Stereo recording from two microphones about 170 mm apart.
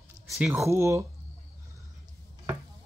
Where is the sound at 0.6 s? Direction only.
15° right (ahead or behind).